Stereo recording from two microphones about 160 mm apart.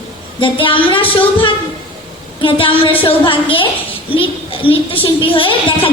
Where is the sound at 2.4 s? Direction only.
35° left (ahead or behind).